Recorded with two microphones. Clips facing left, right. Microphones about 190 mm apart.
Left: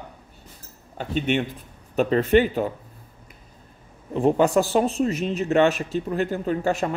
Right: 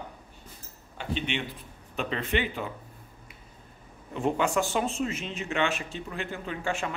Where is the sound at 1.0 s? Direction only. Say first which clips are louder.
Left 8 dB; 45° left (ahead or behind).